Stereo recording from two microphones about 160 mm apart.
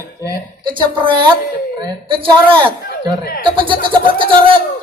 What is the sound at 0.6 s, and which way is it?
Speech, 30° right (ahead or behind).